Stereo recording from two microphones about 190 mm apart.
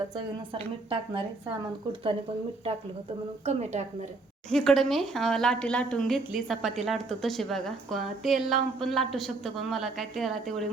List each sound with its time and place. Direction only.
0.5 s speech: 30° right (ahead or behind)
3.4 s a woman's voice: 35° right (ahead or behind)
4.4 s a woman's voice: 5° left (ahead or behind)